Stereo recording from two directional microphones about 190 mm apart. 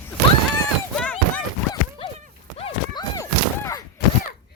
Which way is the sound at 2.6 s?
30° left (ahead or behind).